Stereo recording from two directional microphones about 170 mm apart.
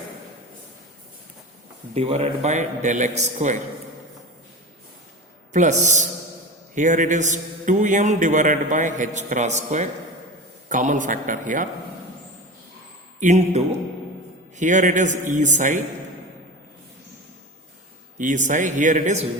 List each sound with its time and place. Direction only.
2.0 s a man's voice: 40° right (ahead or behind)
5.5 s a man's voice: 45° right (ahead or behind)
13.1 s a man's voice: 45° right (ahead or behind)
18.2 s a man's voice: 50° right (ahead or behind)